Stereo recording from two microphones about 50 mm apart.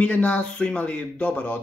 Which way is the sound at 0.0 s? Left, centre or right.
Left.